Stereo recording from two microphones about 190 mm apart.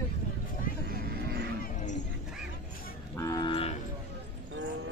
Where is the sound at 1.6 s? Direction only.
40° left (ahead or behind).